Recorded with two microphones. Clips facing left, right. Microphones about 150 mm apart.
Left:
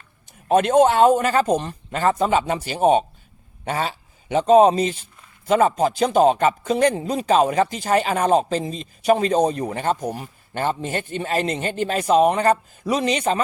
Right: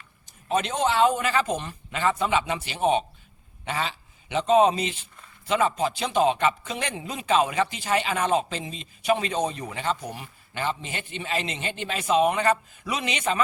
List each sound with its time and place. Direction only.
0.4 s a man's voice: 55° left (ahead or behind); by 13.4 s 40° left (ahead or behind)